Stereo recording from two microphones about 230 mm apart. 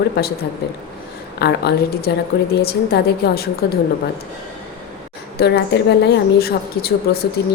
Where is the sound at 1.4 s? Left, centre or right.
Left.